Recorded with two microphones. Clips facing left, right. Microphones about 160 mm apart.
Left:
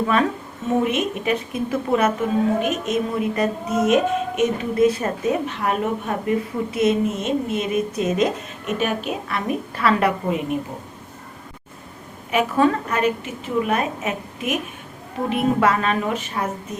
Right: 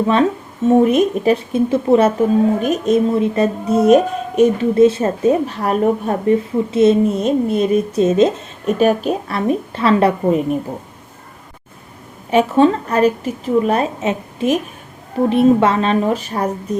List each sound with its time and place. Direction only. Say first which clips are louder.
0.9 s a woman's voice: right 8 dB; 40° right (ahead or behind)
10.2 s a woman's voice: right 7 dB; 40° right (ahead or behind)
12.3 s a woman's voice: right 6 dB; 30° right (ahead or behind)